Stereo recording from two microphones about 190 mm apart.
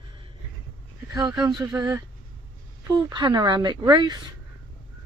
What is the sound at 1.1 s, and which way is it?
Speech, 15° right (ahead or behind).